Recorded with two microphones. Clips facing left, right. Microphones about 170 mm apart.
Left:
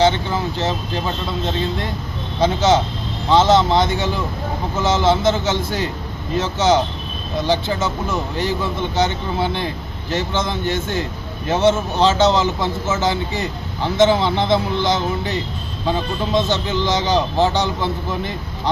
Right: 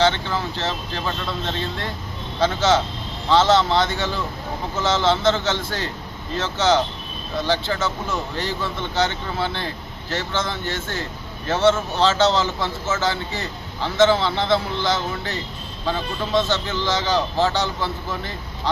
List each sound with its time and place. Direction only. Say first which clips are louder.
0.0 s speech: left 3 dB; 15° left (ahead or behind)
2.4 s speech: left 3 dB; 15° left (ahead or behind)